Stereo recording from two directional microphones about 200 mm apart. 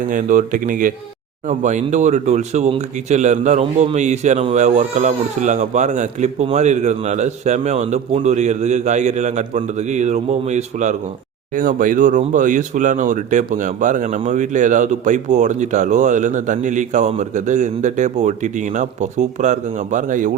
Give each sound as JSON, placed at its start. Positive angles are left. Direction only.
{"t": 0.1, "sound": "speech", "side_deg": -40}